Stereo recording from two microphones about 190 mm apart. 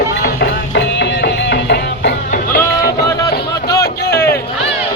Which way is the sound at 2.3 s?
50° left (ahead or behind).